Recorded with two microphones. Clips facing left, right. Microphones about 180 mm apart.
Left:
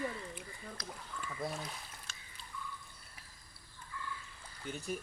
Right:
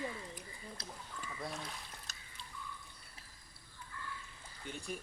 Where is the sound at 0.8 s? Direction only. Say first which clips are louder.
Left 4 dB; 30° right (ahead or behind).